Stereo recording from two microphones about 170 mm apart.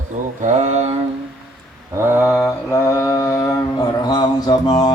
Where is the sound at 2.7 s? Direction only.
20° left (ahead or behind).